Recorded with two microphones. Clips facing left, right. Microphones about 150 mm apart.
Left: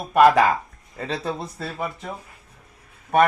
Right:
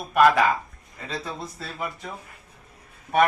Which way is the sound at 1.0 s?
60° left (ahead or behind).